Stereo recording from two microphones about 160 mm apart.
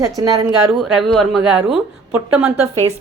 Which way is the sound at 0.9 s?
Centre (ahead or behind).